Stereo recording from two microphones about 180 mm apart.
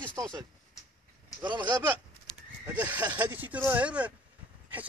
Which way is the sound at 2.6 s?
10° right (ahead or behind).